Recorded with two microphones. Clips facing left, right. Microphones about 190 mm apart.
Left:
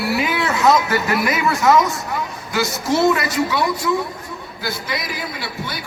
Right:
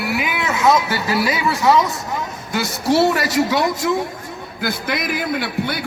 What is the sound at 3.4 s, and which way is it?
Speech, 45° right (ahead or behind).